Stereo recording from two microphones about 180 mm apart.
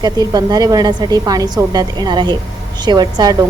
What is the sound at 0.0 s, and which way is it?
A woman's voice, 20° right (ahead or behind).